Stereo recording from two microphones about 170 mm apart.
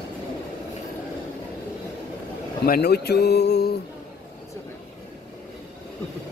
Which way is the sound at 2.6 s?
65° left (ahead or behind).